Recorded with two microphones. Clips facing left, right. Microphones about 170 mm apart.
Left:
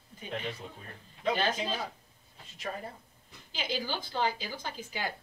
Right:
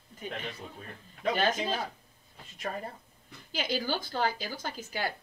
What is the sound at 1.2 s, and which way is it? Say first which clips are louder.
Speech: right 2 dB; 45° right (ahead or behind).